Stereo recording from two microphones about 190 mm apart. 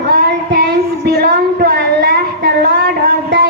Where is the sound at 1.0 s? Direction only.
55° right (ahead or behind).